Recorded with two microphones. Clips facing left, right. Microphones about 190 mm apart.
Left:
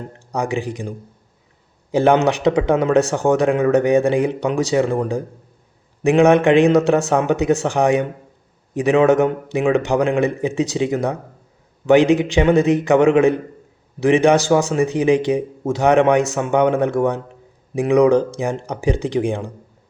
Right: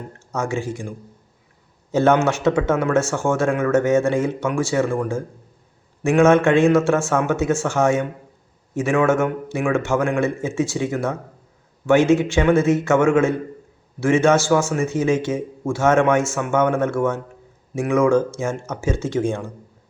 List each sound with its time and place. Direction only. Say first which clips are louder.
0.3 s speech: left 2 dB; 15° left (ahead or behind)